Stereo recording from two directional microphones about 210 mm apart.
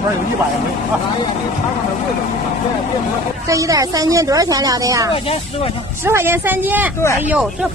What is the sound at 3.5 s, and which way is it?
Speech, 15° right (ahead or behind).